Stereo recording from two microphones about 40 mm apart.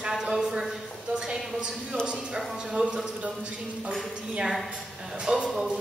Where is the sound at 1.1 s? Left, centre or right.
Centre.